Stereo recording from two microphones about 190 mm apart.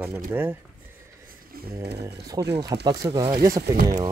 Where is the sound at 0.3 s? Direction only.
10° right (ahead or behind).